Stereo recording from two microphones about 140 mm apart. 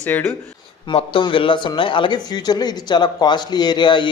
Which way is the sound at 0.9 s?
35° left (ahead or behind).